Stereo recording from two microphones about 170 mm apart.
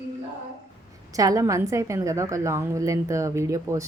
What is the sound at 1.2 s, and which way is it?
A woman's voice, 20° right (ahead or behind).